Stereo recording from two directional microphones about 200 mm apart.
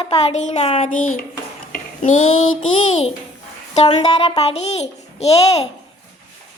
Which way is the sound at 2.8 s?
35° left (ahead or behind).